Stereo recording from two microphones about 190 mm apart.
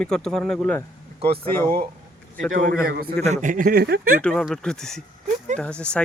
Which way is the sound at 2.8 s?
50° right (ahead or behind).